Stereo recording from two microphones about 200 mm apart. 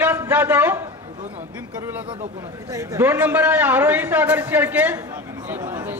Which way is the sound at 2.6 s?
15° right (ahead or behind).